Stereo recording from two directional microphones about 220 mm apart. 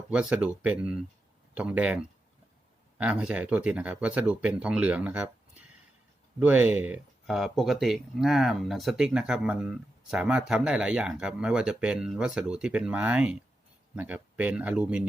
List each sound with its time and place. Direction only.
0.1 s speech: 5° right (ahead or behind)